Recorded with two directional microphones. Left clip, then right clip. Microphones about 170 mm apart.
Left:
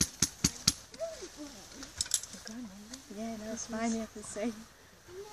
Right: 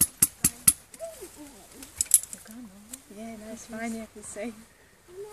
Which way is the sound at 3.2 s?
15° right (ahead or behind).